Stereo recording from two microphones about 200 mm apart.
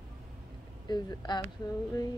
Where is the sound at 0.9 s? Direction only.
20° left (ahead or behind).